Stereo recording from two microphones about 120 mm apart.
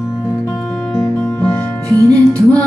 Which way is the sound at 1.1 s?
10° left (ahead or behind).